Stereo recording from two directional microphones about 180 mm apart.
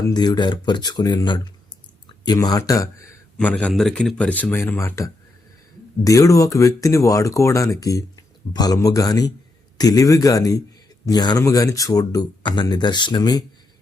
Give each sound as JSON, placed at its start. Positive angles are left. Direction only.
{"t": 0.0, "sound": "a man's voice", "side_deg": 20}
{"t": 3.3, "sound": "a man's voice", "side_deg": 5}